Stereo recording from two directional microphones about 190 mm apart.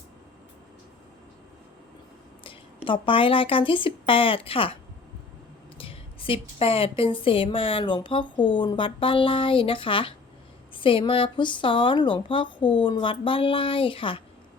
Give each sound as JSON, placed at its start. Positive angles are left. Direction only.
{"t": 2.4, "sound": "a woman's voice", "side_deg": 25}